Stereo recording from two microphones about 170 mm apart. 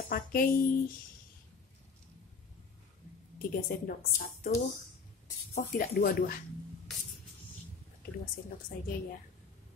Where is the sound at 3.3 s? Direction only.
60° left (ahead or behind).